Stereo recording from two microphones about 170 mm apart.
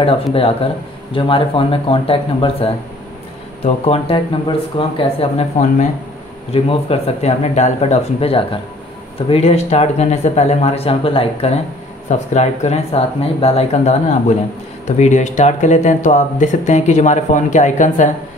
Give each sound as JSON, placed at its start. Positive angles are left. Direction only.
{"t": 0.0, "sound": "speech", "side_deg": 35}